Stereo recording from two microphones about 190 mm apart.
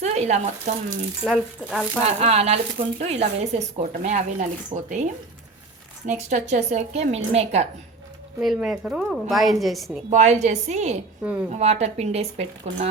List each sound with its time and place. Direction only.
0.0 s a woman's voice: 35° right (ahead or behind)
1.2 s speech: centre (ahead or behind)
2.0 s a woman's voice: 35° right (ahead or behind)
6.1 s a woman's voice: 35° right (ahead or behind)
8.4 s speech: centre (ahead or behind)
10.1 s a woman's voice: 35° right (ahead or behind)
11.2 s a woman's voice: 5° right (ahead or behind)
11.5 s a woman's voice: 35° right (ahead or behind)